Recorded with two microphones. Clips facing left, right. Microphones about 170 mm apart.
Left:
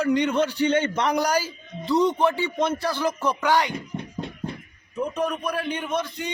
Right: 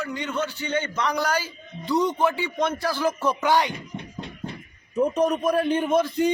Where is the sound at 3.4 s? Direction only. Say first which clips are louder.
Even; 15° right (ahead or behind).